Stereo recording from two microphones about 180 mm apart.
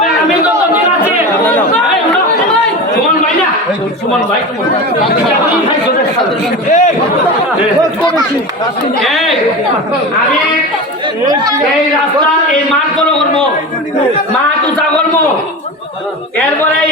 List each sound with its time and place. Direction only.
6.7 s a man's voice: 45° left (ahead or behind)
9.0 s speech: centre (ahead or behind)
11.3 s speech: 20° right (ahead or behind)